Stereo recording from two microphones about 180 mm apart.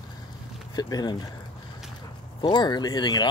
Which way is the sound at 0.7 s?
20° left (ahead or behind).